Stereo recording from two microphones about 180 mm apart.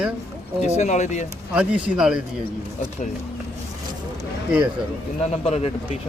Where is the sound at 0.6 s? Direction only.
40° left (ahead or behind).